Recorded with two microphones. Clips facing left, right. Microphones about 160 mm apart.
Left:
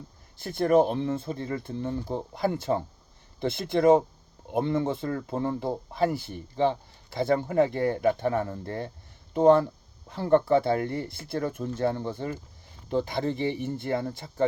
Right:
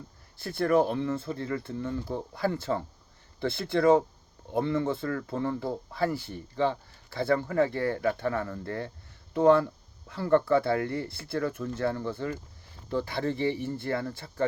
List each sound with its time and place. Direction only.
0.3 s speech: 15° left (ahead or behind)